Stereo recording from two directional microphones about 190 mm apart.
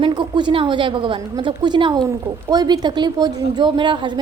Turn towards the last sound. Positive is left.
turn(degrees=-25)  # may be behind; listen again after turning